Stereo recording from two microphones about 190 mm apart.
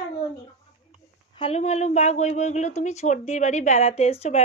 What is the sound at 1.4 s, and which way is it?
Speech, 35° left (ahead or behind).